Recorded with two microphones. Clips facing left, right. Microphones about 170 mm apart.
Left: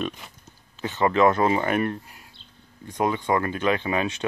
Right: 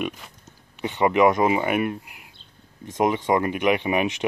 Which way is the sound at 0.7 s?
15° right (ahead or behind).